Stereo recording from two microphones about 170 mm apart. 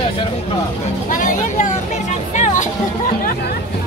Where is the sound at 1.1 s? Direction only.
50° left (ahead or behind).